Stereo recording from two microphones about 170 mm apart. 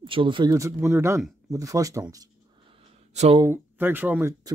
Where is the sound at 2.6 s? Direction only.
35° right (ahead or behind).